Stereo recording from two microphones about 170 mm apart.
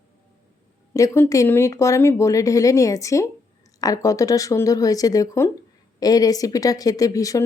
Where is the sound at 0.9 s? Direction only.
15° left (ahead or behind).